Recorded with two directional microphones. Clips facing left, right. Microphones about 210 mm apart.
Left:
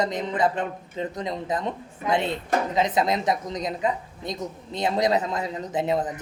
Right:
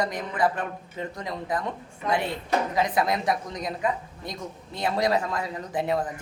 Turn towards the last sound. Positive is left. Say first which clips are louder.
# left 2 dB
turn(degrees=20)  # may be behind; listen again after turning